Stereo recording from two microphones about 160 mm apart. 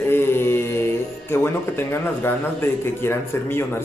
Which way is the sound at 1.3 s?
15° left (ahead or behind).